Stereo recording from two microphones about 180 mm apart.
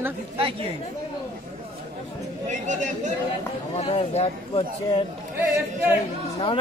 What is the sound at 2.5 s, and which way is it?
Speech, 45° right (ahead or behind).